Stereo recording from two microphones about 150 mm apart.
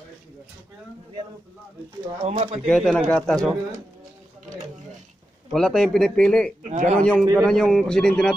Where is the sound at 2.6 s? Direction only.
5° left (ahead or behind).